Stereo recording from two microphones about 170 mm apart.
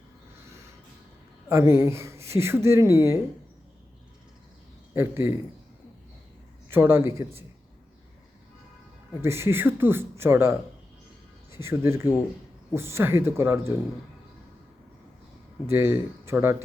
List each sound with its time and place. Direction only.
1.5 s a woman's voice: 15° right (ahead or behind)
4.9 s a woman's voice: 15° right (ahead or behind)
6.7 s a woman's voice: 15° right (ahead or behind)
9.2 s a woman's voice: 15° right (ahead or behind)
15.7 s a woman's voice: 15° right (ahead or behind)